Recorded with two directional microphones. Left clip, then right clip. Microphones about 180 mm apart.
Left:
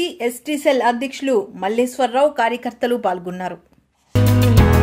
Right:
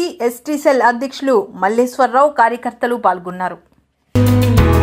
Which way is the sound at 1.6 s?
50° right (ahead or behind).